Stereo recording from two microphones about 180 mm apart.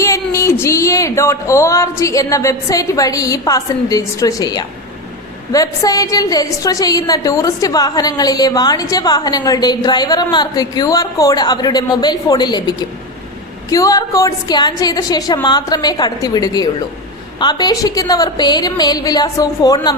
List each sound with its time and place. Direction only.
0.0 s music: 15° left (ahead or behind)
0.6 s a woman's voice: 15° left (ahead or behind)